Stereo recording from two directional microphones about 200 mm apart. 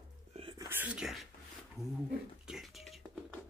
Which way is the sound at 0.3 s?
30° right (ahead or behind).